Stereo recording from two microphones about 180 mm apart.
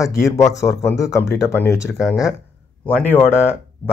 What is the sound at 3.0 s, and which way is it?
Speech, 10° left (ahead or behind).